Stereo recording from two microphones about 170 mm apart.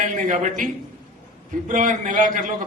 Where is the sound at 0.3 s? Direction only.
50° right (ahead or behind).